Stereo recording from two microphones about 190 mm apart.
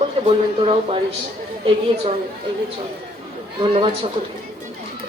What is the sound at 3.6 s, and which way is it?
Speech, 30° right (ahead or behind).